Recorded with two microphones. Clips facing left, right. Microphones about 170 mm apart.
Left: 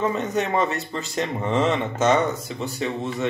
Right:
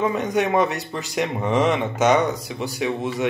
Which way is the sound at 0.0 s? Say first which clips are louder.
Right 2 dB; 15° right (ahead or behind).